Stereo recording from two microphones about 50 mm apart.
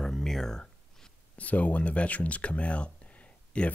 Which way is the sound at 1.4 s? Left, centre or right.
Left.